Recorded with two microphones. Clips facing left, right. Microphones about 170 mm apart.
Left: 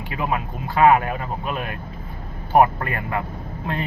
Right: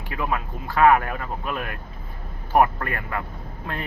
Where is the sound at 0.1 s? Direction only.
20° left (ahead or behind).